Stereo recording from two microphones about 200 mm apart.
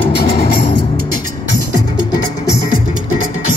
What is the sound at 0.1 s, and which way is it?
Music, 50° left (ahead or behind).